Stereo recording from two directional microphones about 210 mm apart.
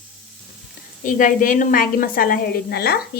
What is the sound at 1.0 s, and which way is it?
A woman's voice, 40° left (ahead or behind).